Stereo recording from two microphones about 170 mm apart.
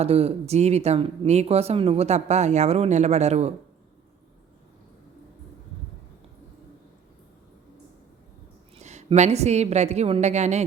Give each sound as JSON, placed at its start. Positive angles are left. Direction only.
{"t": 0.0, "sound": "speech", "side_deg": -35}
{"t": 8.7, "sound": "a woman's voice", "side_deg": -40}